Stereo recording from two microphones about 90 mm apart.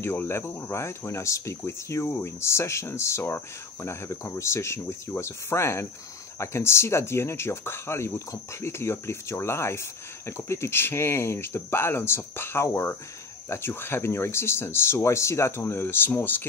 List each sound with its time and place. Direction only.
0.0 s speech: 25° left (ahead or behind)